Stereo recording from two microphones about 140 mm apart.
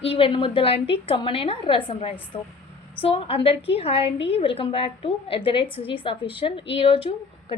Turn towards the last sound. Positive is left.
turn(degrees=40)  # may be behind; listen again after turning